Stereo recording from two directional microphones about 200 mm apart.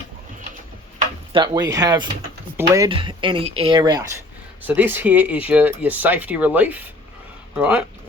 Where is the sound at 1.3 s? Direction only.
20° right (ahead or behind).